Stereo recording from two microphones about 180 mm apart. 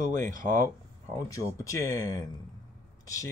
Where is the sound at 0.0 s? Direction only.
50° right (ahead or behind).